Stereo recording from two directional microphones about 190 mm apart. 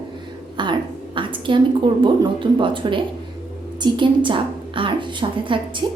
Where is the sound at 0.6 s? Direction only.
25° right (ahead or behind).